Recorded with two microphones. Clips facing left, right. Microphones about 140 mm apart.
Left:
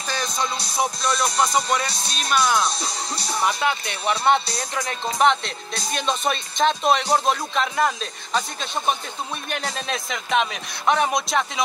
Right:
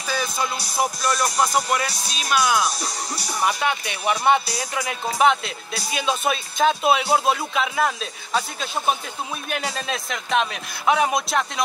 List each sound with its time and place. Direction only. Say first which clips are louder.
0.0 s music: right 1 dB; 5° right (ahead or behind)
0.7 s speech: right 1 dB; 5° right (ahead or behind)
2.7 s speech: even; 25° left (ahead or behind)
3.3 s speech: even; 10° right (ahead or behind)